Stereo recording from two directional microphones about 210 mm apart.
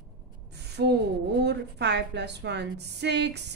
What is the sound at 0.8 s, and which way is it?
A woman's voice, 50° right (ahead or behind).